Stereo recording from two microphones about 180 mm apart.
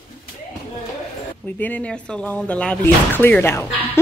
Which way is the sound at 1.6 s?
5° left (ahead or behind).